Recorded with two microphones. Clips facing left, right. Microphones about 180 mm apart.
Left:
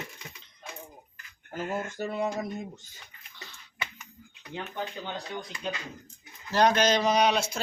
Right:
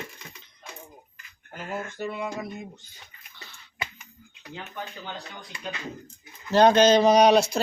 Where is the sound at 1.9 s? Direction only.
45° left (ahead or behind).